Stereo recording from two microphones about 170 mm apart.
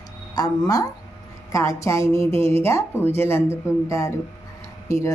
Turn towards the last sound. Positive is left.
turn(degrees=15)  # may be behind; listen again after turning